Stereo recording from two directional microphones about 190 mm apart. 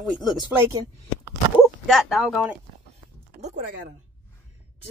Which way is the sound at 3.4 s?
50° right (ahead or behind).